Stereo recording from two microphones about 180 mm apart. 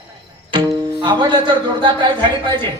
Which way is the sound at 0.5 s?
25° right (ahead or behind).